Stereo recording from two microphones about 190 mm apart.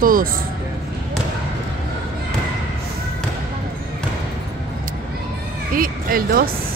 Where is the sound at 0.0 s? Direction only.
45° right (ahead or behind).